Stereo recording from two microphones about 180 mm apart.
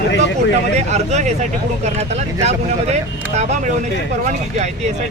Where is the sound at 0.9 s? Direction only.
40° right (ahead or behind).